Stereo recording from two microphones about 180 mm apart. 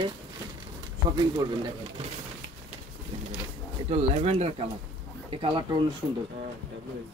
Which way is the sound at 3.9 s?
35° right (ahead or behind).